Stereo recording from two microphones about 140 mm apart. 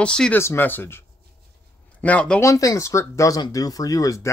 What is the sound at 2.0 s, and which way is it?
Speech, 10° left (ahead or behind).